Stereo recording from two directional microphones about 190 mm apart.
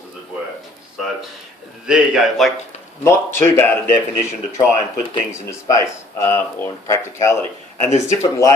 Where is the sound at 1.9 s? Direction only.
Centre (ahead or behind).